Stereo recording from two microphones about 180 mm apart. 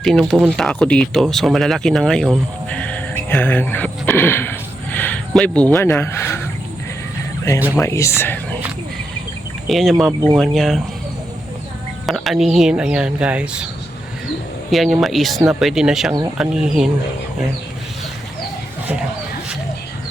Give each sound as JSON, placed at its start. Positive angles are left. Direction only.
{"t": 0.0, "sound": "speech", "side_deg": 0}
{"t": 7.8, "sound": "speech", "side_deg": 15}
{"t": 9.6, "sound": "speech", "side_deg": 0}
{"t": 10.1, "sound": "speech", "side_deg": -20}
{"t": 10.3, "sound": "speech", "side_deg": 0}
{"t": 12.0, "sound": "speech", "side_deg": 0}
{"t": 14.7, "sound": "speech", "side_deg": 0}